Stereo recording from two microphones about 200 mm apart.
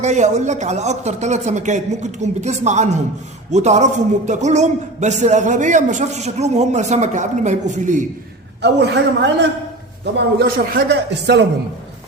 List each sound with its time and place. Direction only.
0.0 s a man's voice: 35° right (ahead or behind)
8.6 s speech: 60° right (ahead or behind)